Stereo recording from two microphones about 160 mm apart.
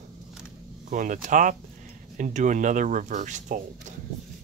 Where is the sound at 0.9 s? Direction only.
50° right (ahead or behind).